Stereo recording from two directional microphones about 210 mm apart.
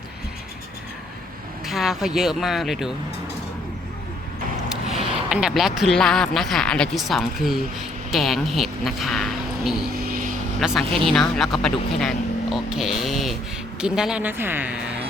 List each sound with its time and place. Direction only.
1.6 s speech: centre (ahead or behind)
4.7 s speech: centre (ahead or behind)
9.9 s vehicle: 45° right (ahead or behind)
10.6 s speech: centre (ahead or behind)